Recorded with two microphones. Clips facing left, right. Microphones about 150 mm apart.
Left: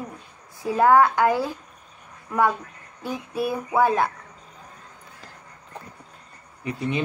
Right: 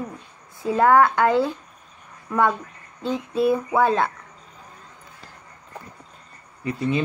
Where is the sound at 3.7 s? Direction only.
10° left (ahead or behind).